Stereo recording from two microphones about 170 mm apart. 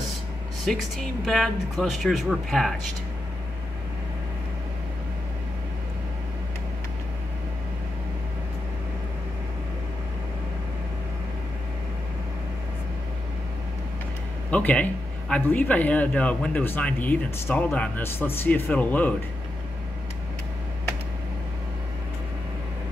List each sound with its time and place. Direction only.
0.7 s speech: centre (ahead or behind)
14.5 s a man's voice: 10° left (ahead or behind)